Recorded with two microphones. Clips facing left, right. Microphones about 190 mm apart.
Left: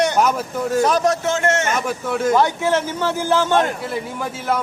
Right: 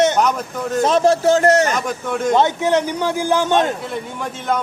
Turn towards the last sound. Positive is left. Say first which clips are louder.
# right 1 dB
turn(degrees=-20)  # may be behind; listen again after turning